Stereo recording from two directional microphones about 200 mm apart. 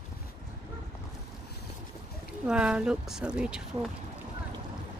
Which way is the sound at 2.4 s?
5° right (ahead or behind).